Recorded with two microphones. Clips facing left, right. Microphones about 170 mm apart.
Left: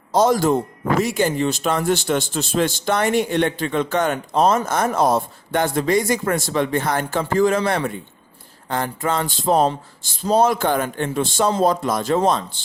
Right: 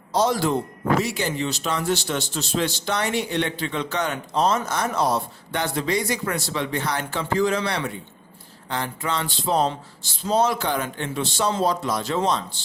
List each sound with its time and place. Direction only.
0.1 s a man's voice: 50° left (ahead or behind)